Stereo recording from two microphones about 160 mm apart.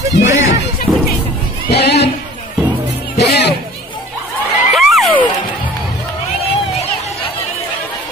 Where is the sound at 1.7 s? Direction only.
90° left.